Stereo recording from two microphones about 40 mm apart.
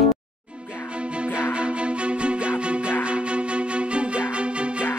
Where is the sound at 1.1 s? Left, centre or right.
Right.